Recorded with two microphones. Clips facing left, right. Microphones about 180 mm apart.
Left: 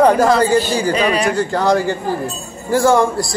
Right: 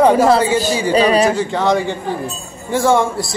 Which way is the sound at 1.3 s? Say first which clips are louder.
Left 1 dB; centre (ahead or behind).